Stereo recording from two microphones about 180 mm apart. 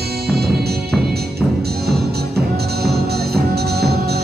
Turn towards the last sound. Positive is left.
turn(degrees=-60)  # may be behind; listen again after turning